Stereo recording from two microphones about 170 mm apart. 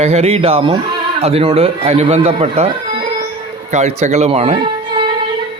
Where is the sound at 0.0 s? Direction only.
40° right (ahead or behind).